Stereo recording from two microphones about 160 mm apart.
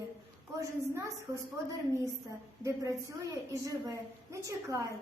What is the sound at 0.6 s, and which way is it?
Speech, 15° right (ahead or behind).